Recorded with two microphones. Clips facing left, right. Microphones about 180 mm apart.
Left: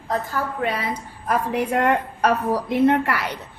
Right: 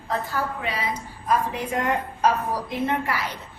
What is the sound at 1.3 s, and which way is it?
A woman's voice, 65° left (ahead or behind).